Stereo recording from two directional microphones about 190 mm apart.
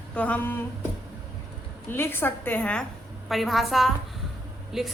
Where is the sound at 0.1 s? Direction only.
10° left (ahead or behind).